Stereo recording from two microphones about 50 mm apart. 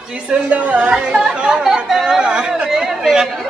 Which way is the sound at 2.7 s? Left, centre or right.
Centre.